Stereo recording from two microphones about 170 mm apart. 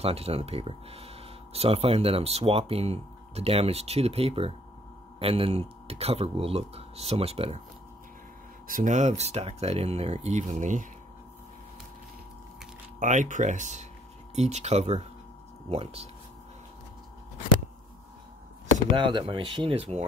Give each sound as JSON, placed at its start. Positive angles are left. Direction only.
{"t": 0.0, "sound": "speech", "side_deg": -35}
{"t": 8.6, "sound": "speech", "side_deg": -50}
{"t": 13.0, "sound": "speech", "side_deg": -45}
{"t": 18.9, "sound": "speech", "side_deg": -30}